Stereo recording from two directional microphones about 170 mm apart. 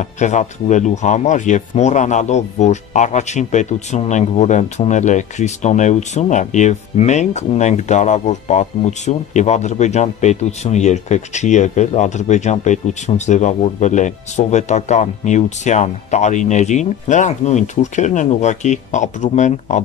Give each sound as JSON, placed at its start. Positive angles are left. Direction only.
{"t": 0.0, "sound": "speech", "side_deg": 45}